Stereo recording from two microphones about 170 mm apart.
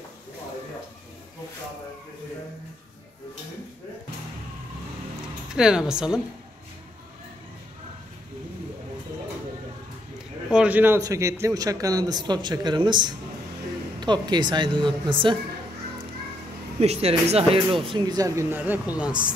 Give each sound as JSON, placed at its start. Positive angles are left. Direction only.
{"t": 5.5, "sound": "speech", "side_deg": -5}
{"t": 10.5, "sound": "a man's voice", "side_deg": -10}
{"t": 16.8, "sound": "a man's voice", "side_deg": -40}